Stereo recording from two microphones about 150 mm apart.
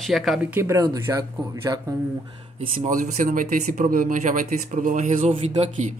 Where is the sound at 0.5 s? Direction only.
20° right (ahead or behind).